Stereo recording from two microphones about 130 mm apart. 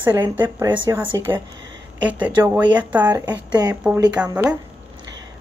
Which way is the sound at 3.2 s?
30° right (ahead or behind).